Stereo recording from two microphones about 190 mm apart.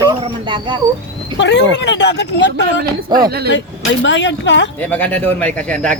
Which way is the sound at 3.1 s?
55° right (ahead or behind).